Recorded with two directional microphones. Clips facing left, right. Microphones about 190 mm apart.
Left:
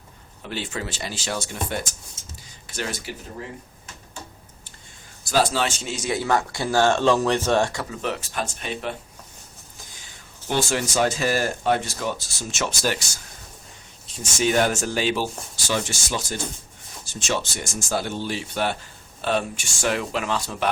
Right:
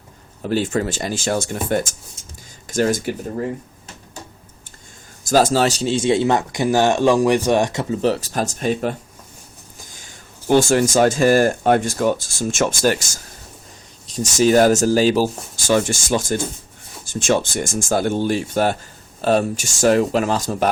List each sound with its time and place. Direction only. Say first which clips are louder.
0.4 s speech: right 11 dB; 45° right (ahead or behind)
5.2 s speech: right 6 dB; 45° right (ahead or behind)
10.5 s speech: right 9 dB; 45° right (ahead or behind)
14.1 s speech: right 8 dB; 40° right (ahead or behind)